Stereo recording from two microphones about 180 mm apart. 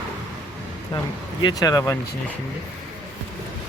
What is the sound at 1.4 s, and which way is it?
Speech, 20° left (ahead or behind).